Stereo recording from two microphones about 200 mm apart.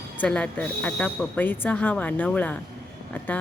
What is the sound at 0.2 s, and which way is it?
A woman's voice, 5° left (ahead or behind).